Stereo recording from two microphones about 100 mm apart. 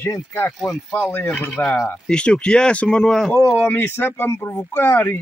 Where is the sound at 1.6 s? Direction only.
5° left (ahead or behind).